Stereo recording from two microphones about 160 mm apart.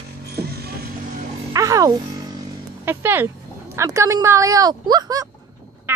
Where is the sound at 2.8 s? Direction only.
15° right (ahead or behind).